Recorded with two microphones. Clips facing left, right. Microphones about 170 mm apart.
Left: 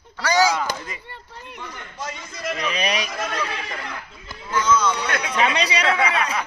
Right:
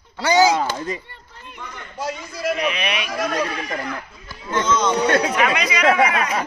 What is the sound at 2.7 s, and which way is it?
Speech, 40° left (ahead or behind).